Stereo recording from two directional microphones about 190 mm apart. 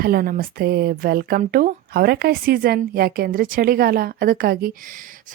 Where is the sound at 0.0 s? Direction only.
50° right (ahead or behind).